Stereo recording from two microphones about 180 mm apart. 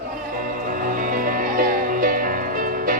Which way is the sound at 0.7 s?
50° right (ahead or behind).